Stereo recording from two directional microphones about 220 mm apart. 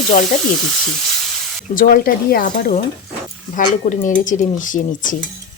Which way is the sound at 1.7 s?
40° left (ahead or behind).